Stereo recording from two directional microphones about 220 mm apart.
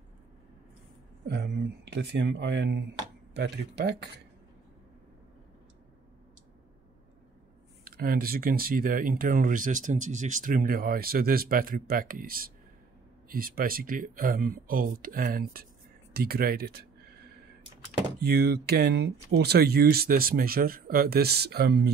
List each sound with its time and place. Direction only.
1.2 s speech: 50° right (ahead or behind)
7.8 s speech: 40° right (ahead or behind)
18.2 s speech: 45° right (ahead or behind)